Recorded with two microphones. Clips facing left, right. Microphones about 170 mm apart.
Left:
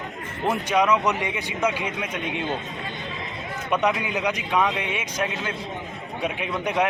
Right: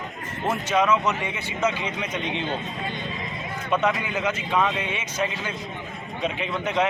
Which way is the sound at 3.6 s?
15° left (ahead or behind).